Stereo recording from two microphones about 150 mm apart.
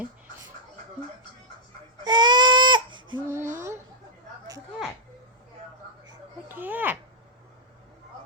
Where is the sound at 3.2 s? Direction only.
15° right (ahead or behind).